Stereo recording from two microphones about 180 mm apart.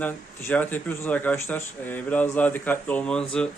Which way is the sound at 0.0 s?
10° left (ahead or behind).